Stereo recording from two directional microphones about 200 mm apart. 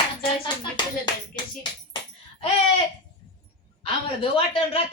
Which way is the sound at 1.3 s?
20° left (ahead or behind).